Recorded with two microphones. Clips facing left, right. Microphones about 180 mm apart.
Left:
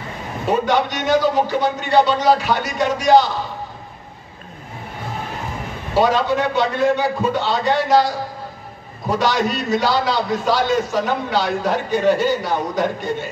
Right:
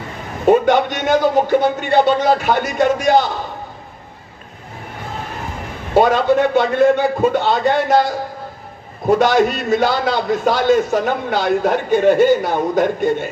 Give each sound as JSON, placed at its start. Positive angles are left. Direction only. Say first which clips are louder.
{"t": 0.5, "sound": "a man's voice", "louder": "right 6 dB", "side_deg": -50}
{"t": 5.9, "sound": "a man's voice", "louder": "right 4 dB", "side_deg": -50}
{"t": 9.1, "sound": "a man's voice", "louder": "right 6 dB", "side_deg": -50}